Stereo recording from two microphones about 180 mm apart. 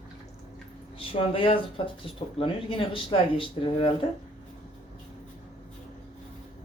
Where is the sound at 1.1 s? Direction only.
30° left (ahead or behind).